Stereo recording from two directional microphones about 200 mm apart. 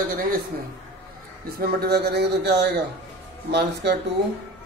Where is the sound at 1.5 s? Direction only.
50° right (ahead or behind).